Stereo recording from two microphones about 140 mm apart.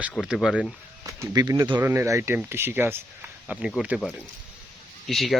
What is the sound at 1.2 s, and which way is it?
Speech, 25° right (ahead or behind).